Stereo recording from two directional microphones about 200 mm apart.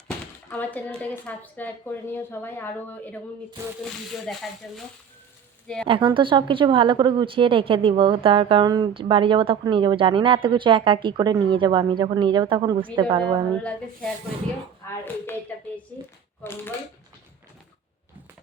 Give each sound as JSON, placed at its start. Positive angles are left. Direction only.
{"t": 0.6, "sound": "a woman's voice", "side_deg": 10}
{"t": 4.3, "sound": "speech", "side_deg": 5}
{"t": 5.6, "sound": "a woman's voice", "side_deg": 5}
{"t": 5.9, "sound": "a woman's voice", "side_deg": -25}
{"t": 14.8, "sound": "a woman's voice", "side_deg": 10}
{"t": 16.4, "sound": "a woman's voice", "side_deg": 10}